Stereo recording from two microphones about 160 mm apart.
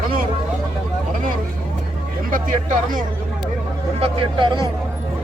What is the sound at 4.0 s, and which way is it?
Speech, 30° right (ahead or behind).